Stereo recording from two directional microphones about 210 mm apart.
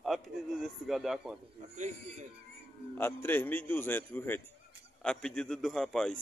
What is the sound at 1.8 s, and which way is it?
Speech, 35° right (ahead or behind).